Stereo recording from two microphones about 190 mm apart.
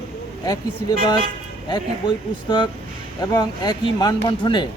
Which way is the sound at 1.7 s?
25° left (ahead or behind).